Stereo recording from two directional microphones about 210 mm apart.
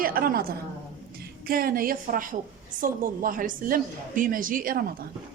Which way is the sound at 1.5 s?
45° right (ahead or behind).